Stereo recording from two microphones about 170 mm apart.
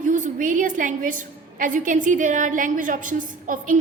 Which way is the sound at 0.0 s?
50° right (ahead or behind).